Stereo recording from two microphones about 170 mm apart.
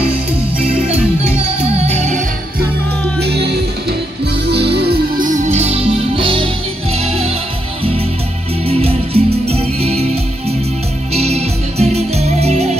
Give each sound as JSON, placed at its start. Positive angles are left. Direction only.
{"t": 0.6, "sound": "music", "side_deg": -35}
{"t": 3.2, "sound": "music", "side_deg": -75}
{"t": 4.5, "sound": "music", "side_deg": -75}
{"t": 8.6, "sound": "music", "side_deg": -35}
{"t": 11.1, "sound": "music", "side_deg": -40}